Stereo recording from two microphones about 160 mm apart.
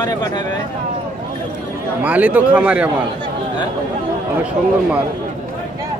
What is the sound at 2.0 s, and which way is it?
Speech, 10° right (ahead or behind).